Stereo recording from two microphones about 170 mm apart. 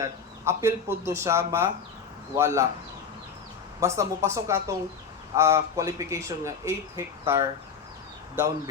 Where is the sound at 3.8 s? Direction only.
15° right (ahead or behind).